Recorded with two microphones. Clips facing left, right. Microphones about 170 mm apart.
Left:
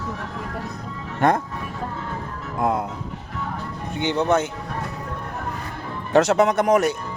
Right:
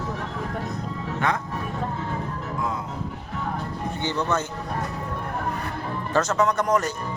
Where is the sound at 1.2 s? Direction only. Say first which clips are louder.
Left 7 dB; 50° left (ahead or behind).